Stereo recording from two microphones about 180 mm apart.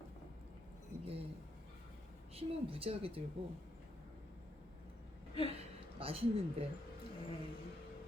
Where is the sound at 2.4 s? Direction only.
30° right (ahead or behind).